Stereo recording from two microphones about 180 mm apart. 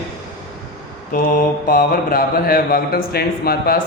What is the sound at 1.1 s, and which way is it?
A man's voice, 55° left (ahead or behind).